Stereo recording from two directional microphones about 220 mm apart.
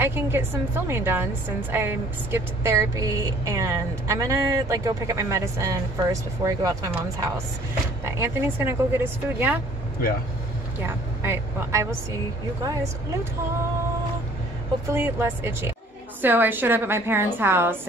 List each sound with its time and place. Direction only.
0.0 s a woman's voice: 10° right (ahead or behind)
11.2 s a woman's voice: 10° right (ahead or behind)
14.9 s a woman's voice: 10° right (ahead or behind)